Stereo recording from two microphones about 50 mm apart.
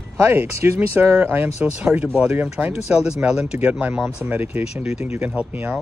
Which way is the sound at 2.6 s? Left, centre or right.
Centre.